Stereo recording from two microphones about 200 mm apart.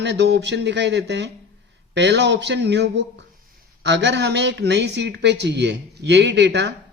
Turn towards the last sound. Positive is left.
turn(degrees=-60)  # may be behind; listen again after turning